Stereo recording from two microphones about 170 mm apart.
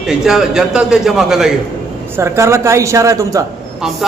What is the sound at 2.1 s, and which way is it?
A woman's voice, 15° right (ahead or behind).